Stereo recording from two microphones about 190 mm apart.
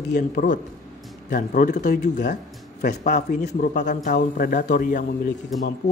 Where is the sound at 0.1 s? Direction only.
45° left (ahead or behind).